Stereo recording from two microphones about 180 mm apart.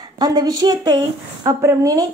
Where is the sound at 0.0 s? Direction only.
20° right (ahead or behind).